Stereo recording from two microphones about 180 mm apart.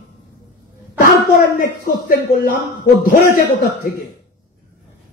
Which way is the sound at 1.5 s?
55° left (ahead or behind).